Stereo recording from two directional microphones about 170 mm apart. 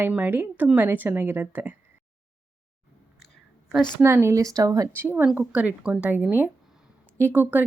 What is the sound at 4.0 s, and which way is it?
Speech, 15° right (ahead or behind).